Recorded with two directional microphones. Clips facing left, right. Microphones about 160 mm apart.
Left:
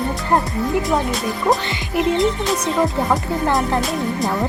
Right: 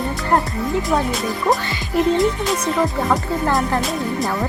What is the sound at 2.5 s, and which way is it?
Music, centre (ahead or behind).